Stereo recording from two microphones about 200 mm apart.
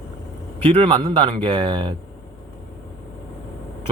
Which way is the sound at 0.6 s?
25° right (ahead or behind).